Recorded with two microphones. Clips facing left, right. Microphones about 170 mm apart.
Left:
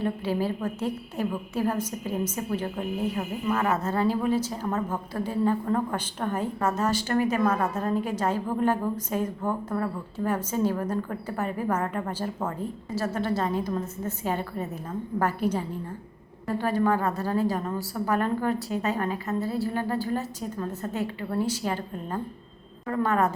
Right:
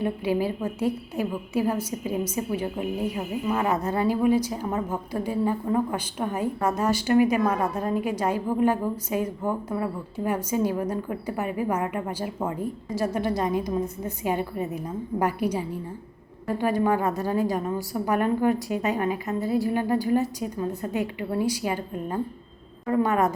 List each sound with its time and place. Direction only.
0.0 s a woman's voice: 15° right (ahead or behind)